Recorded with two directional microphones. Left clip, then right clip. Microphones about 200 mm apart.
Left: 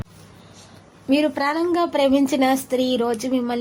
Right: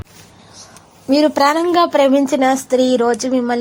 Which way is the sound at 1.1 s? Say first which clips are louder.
Right 7 dB; 25° right (ahead or behind).